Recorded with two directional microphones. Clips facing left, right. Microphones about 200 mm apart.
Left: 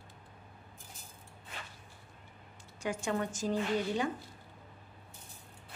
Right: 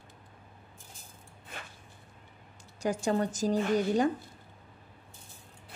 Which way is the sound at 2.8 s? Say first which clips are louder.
Right 5 dB; 35° right (ahead or behind).